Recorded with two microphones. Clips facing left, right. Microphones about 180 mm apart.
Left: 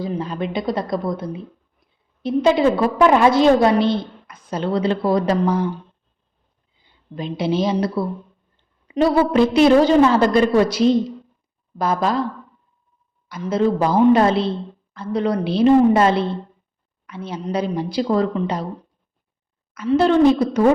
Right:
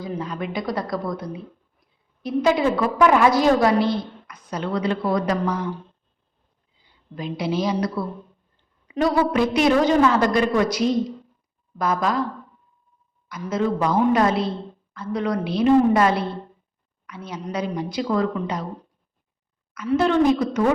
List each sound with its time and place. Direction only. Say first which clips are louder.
0.0 s a woman's voice: left 4 dB; 30° left (ahead or behind)
6.8 s a woman's voice: left 2 dB; 25° left (ahead or behind)
13.2 s a woman's voice: left 4 dB; 30° left (ahead or behind)
19.7 s a woman's voice: left 4 dB; 30° left (ahead or behind)